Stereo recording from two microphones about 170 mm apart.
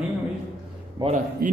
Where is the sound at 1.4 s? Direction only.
60° right (ahead or behind).